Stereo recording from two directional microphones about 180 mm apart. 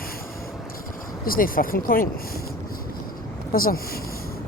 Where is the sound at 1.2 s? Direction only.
50° left (ahead or behind).